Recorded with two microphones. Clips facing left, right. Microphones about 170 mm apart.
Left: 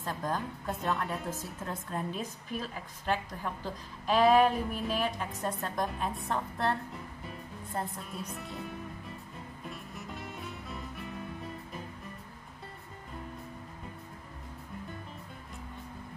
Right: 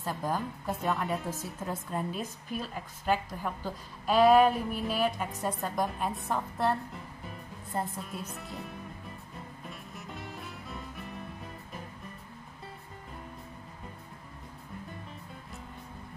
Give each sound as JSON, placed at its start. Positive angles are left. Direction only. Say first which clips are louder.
{"t": 0.0, "sound": "a woman's voice", "louder": "right 2 dB", "side_deg": -10}
{"t": 7.7, "sound": "a woman's voice", "louder": "right 2 dB", "side_deg": 0}
{"t": 9.7, "sound": "music", "louder": "left 4 dB", "side_deg": 0}